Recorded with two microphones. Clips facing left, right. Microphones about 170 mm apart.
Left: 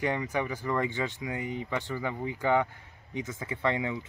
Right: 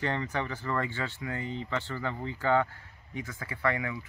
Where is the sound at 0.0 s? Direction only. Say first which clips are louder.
Left 2 dB; 10° left (ahead or behind).